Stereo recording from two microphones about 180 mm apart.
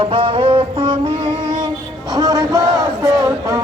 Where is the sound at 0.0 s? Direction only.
30° right (ahead or behind).